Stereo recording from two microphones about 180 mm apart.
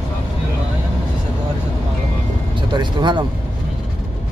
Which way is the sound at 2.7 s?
25° right (ahead or behind).